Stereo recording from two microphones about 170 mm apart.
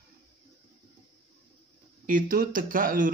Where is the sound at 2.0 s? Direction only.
55° right (ahead or behind).